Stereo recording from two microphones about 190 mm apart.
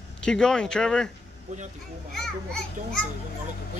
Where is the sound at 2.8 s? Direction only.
40° right (ahead or behind).